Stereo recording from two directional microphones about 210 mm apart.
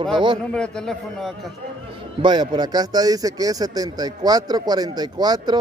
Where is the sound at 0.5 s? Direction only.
5° left (ahead or behind).